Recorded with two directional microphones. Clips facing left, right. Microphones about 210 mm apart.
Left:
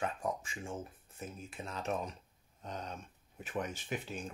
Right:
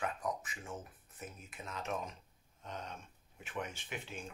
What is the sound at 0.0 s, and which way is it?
Speech, 30° left (ahead or behind).